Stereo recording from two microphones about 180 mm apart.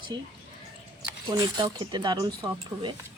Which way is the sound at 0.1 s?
20° right (ahead or behind).